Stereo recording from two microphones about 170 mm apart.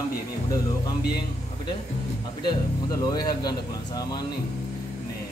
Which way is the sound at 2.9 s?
25° left (ahead or behind).